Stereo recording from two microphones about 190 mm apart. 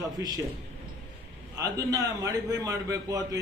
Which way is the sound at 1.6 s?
15° right (ahead or behind).